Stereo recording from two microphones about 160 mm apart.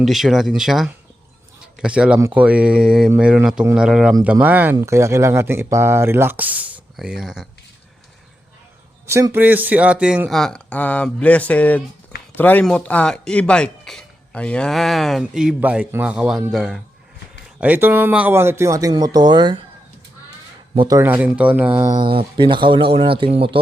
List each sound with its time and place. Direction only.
0.0 s speech: centre (ahead or behind)
9.0 s speech: 15° right (ahead or behind); by 16.8 s centre (ahead or behind)
17.6 s speech: 10° right (ahead or behind); by 19.5 s 30° right (ahead or behind)
20.7 s speech: 20° right (ahead or behind)
21.9 s speech: 30° right (ahead or behind)